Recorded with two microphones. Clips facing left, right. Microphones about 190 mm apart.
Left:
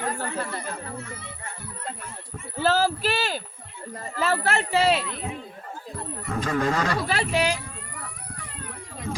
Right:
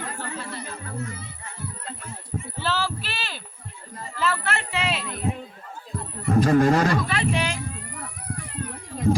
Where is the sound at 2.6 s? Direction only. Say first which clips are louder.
Left 7 dB; 45° left (ahead or behind).